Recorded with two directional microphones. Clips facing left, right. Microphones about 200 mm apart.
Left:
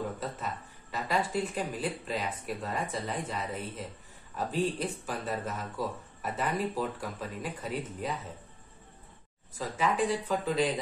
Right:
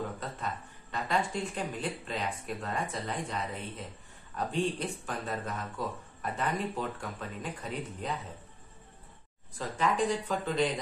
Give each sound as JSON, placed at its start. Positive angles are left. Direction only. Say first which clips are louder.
{"t": 0.9, "sound": "speech", "louder": "left 1 dB", "side_deg": 5}
{"t": 9.6, "sound": "speech", "louder": "even", "side_deg": 5}